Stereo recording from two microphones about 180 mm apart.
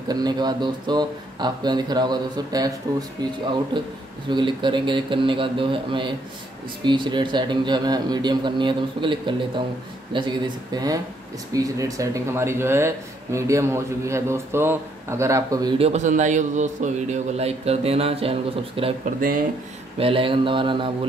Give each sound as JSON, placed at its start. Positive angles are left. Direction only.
{"t": 0.1, "sound": "speech", "side_deg": -20}
{"t": 4.3, "sound": "speech", "side_deg": -25}
{"t": 15.8, "sound": "a man's voice", "side_deg": -40}
{"t": 20.0, "sound": "speech", "side_deg": -30}